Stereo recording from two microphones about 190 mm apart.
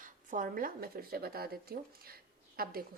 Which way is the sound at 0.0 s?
45° right (ahead or behind).